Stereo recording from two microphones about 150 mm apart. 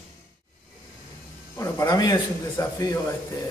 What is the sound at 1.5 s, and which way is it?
A man's voice, 20° left (ahead or behind).